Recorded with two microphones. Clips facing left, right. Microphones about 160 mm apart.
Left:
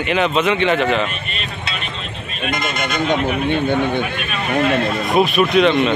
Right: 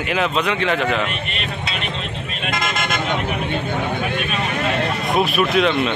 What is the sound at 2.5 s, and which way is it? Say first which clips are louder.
Speech: left 1 dB; 90° right.